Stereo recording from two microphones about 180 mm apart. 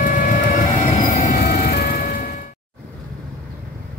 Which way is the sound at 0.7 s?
45° left (ahead or behind).